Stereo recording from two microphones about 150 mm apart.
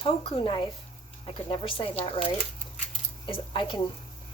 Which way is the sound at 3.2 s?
35° left (ahead or behind).